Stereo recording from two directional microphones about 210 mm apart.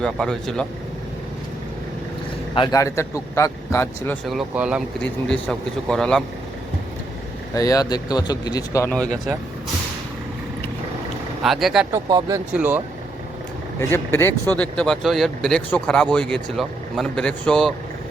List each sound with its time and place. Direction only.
0.0 s speech: 5° left (ahead or behind)
2.6 s a man's voice: 15° left (ahead or behind)
7.5 s a man's voice: 15° left (ahead or behind)
11.4 s speech: centre (ahead or behind)
12.0 s speech: 20° right (ahead or behind)
12.5 s speech: 10° right (ahead or behind)
13.7 s a man's voice: 10° left (ahead or behind)